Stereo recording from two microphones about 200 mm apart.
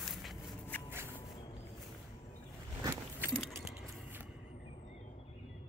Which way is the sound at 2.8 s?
15° right (ahead or behind).